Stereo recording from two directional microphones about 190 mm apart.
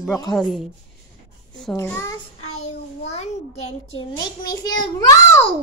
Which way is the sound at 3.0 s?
35° left (ahead or behind).